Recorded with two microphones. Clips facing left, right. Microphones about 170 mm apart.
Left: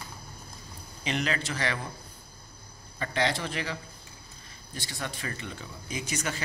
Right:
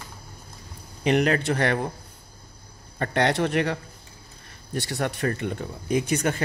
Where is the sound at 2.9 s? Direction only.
65° right (ahead or behind).